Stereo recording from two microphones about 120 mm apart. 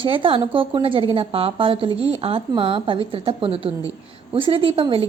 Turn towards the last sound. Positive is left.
turn(degrees=-50)  # may be behind; listen again after turning